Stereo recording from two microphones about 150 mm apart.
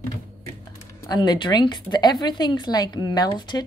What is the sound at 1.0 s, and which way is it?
A woman's voice, 25° left (ahead or behind).